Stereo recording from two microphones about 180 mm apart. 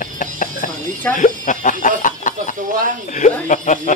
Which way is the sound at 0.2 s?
50° left (ahead or behind).